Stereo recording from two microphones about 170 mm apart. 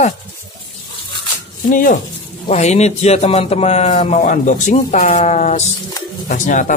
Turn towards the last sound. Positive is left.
turn(degrees=50)  # may be behind; listen again after turning